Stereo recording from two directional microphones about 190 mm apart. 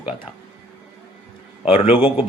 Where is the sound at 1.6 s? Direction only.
30° left (ahead or behind).